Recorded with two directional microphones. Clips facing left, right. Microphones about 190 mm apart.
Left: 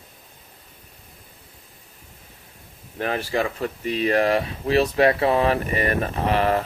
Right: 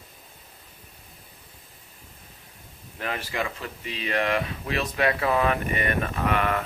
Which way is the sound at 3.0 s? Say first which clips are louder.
Left 6 dB; 35° left (ahead or behind).